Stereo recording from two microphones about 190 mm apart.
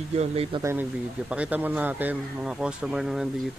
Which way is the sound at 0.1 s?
30° right (ahead or behind).